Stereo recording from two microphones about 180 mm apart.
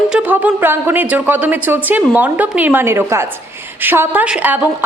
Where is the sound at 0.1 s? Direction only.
10° right (ahead or behind).